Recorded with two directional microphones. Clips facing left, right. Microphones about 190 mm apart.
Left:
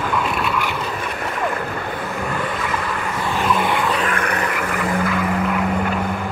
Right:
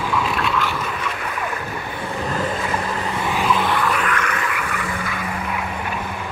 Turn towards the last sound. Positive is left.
turn(degrees=45)  # may be behind; listen again after turning